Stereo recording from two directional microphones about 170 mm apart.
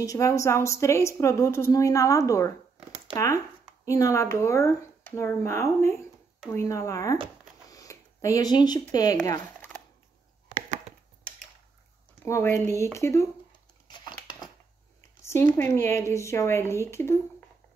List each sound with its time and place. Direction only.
0.0 s a woman's voice: 20° left (ahead or behind)
3.8 s a woman's voice: 20° left (ahead or behind)
12.3 s a woman's voice: 15° left (ahead or behind)
13.8 s a sound: 25° left (ahead or behind)
15.2 s a woman's voice: 15° left (ahead or behind)